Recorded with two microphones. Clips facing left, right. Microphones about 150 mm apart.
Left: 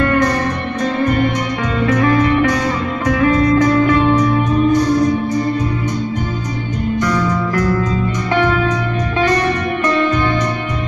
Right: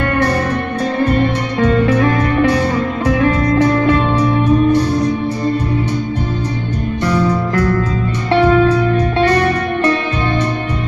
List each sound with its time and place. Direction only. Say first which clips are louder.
1.9 s music: even; 30° right (ahead or behind)
7.0 s music: right 3 dB; 30° right (ahead or behind)